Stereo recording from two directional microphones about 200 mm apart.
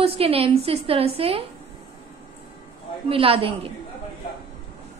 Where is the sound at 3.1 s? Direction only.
25° right (ahead or behind).